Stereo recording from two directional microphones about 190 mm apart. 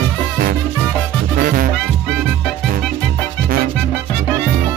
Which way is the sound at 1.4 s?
50° right (ahead or behind).